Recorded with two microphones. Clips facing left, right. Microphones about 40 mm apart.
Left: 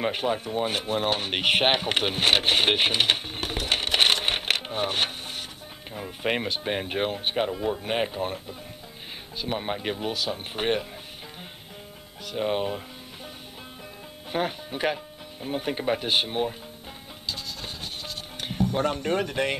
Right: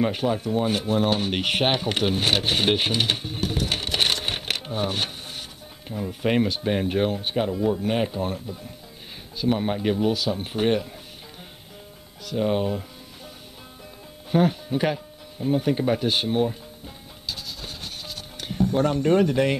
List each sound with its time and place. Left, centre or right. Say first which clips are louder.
0.0 s speech: right 3 dB; centre
12.3 s speech: right 3 dB; centre
14.3 s speech: right 7 dB; centre
17.3 s music: even; centre
18.4 s speech: right 3 dB; centre